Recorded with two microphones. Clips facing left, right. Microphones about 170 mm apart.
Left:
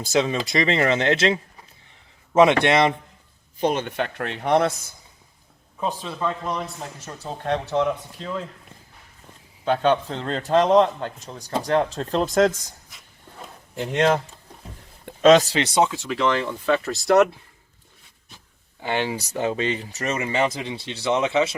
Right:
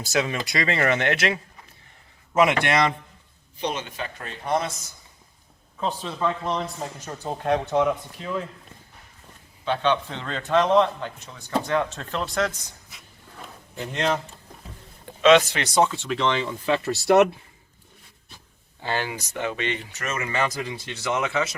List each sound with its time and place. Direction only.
0.1 s speech: 25° left (ahead or behind)
3.6 s speech: 50° left (ahead or behind); by 4.7 s 70° left (ahead or behind)
5.8 s speech: 10° left (ahead or behind)
6.4 s a man's voice: 20° right (ahead or behind)
9.6 s a man's voice: 45° left (ahead or behind)
12.9 s a sound: centre (ahead or behind)
15.2 s a man's voice: 40° left (ahead or behind)
15.8 s speech: 10° left (ahead or behind)
18.8 s speech: 20° left (ahead or behind)
19.1 s a man's voice: 35° left (ahead or behind)
20.1 s speech: 25° left (ahead or behind)